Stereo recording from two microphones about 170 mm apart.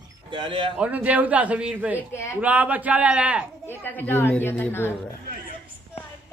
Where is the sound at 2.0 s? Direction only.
15° left (ahead or behind).